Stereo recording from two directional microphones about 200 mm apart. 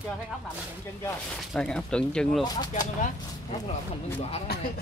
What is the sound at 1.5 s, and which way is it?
Speech, 5° left (ahead or behind).